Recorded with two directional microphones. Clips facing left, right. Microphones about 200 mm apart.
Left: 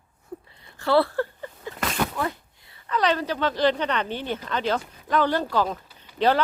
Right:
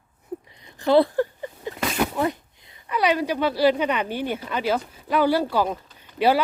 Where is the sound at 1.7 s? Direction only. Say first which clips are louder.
Right 2 dB; centre (ahead or behind).